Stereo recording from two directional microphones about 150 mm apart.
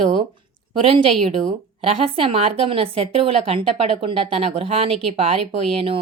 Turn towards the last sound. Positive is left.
turn(degrees=-35)  # may be behind; listen again after turning